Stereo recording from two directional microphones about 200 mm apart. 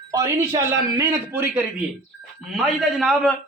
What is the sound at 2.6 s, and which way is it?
Speech, centre (ahead or behind).